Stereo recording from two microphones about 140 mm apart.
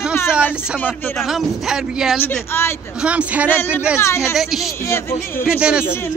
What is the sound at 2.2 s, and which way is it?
Speech, 15° left (ahead or behind).